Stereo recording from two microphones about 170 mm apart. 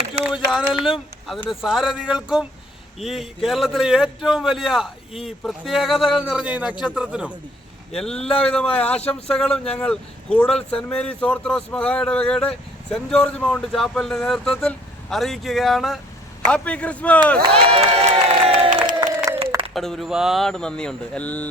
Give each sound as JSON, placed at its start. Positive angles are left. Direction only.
{"t": 0.3, "sound": "speech", "side_deg": -5}
{"t": 7.9, "sound": "a man's voice", "side_deg": 5}
{"t": 17.4, "sound": "crowd", "side_deg": -35}
{"t": 19.7, "sound": "speech", "side_deg": 0}